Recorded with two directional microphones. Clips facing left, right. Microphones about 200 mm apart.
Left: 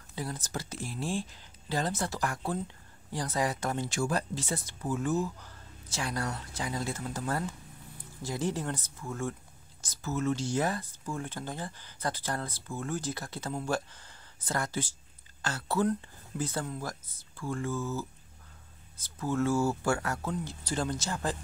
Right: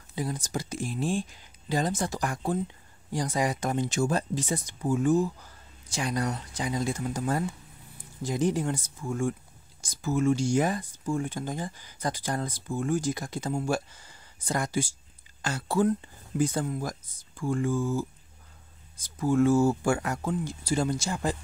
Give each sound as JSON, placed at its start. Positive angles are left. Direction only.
{"t": 0.1, "sound": "speech", "side_deg": -15}